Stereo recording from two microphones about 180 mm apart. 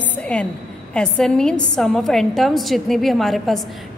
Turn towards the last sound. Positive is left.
turn(degrees=0)  # may be behind; listen again after turning